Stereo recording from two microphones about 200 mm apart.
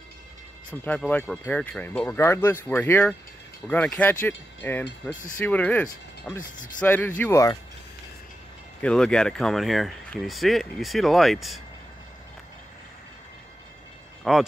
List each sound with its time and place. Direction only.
0.8 s speech: 5° left (ahead or behind)
8.8 s speech: 5° left (ahead or behind)
14.3 s speech: centre (ahead or behind)